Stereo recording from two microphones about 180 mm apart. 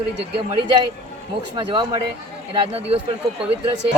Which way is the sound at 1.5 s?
25° right (ahead or behind).